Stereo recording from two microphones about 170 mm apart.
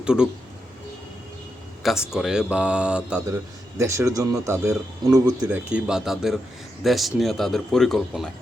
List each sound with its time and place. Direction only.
0.0 s speech: 5° right (ahead or behind)
1.8 s a man's voice: 5° right (ahead or behind)
3.8 s speech: 15° right (ahead or behind)
5.5 s a man's voice: 10° right (ahead or behind)